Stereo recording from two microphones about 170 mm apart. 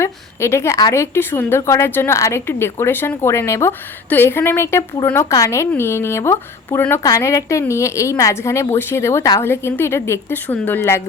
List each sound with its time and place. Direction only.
0.0 s speech: 15° left (ahead or behind)